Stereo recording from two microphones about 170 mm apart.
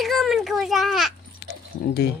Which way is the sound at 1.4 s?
75° left (ahead or behind).